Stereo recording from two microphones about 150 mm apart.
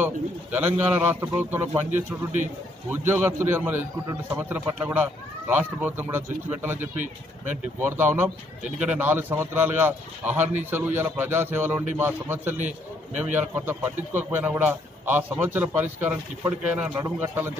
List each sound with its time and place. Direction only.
0.0 s speech: 10° right (ahead or behind)
2.9 s speech: 15° right (ahead or behind)